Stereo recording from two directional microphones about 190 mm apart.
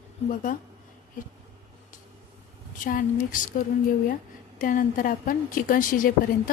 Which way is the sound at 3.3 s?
45° left (ahead or behind).